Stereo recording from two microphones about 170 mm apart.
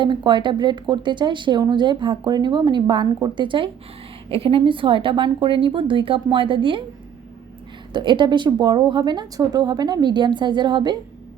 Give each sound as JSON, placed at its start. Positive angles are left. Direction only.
{"t": 0.0, "sound": "a woman's voice", "side_deg": -25}
{"t": 7.9, "sound": "a woman's voice", "side_deg": -25}